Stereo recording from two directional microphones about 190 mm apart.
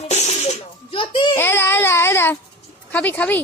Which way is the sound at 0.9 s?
25° left (ahead or behind).